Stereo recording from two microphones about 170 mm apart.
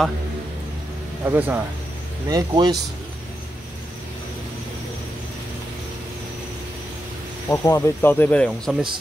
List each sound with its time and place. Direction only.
1.2 s speech: 10° right (ahead or behind)
2.2 s speech: 20° right (ahead or behind)
7.4 s speech: 15° left (ahead or behind)